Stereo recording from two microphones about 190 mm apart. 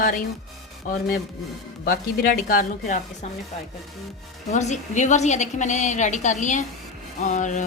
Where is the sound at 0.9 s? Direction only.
45° left (ahead or behind).